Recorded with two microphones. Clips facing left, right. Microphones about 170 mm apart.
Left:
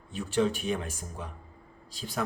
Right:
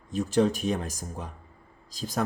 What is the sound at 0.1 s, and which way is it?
Speech, 40° right (ahead or behind).